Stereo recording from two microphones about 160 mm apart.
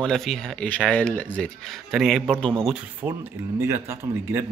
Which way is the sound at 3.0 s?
10° right (ahead or behind).